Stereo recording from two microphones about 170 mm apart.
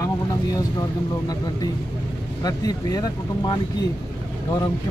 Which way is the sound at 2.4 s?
20° left (ahead or behind).